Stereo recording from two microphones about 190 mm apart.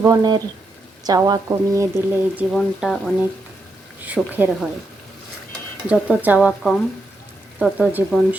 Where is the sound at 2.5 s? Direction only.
Centre (ahead or behind).